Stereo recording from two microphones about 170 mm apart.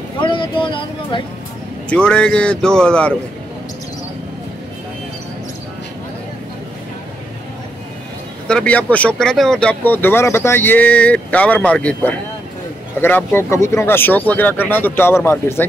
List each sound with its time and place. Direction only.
0.2 s speech: 30° left (ahead or behind)
1.9 s speech: 5° left (ahead or behind)
8.5 s speech: 5° left (ahead or behind)